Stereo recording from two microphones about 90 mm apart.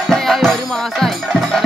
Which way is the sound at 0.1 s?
5° left (ahead or behind).